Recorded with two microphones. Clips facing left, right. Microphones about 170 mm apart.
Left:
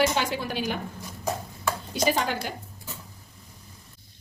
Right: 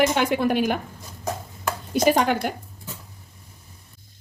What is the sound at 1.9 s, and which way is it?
Speech, 55° right (ahead or behind).